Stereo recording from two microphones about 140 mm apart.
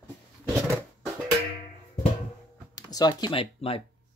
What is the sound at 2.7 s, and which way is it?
Speech, 30° left (ahead or behind).